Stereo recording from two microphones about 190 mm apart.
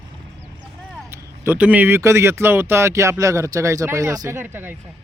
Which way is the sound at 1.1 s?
10° right (ahead or behind).